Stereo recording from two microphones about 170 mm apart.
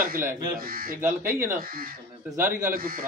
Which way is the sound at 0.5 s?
60° right (ahead or behind).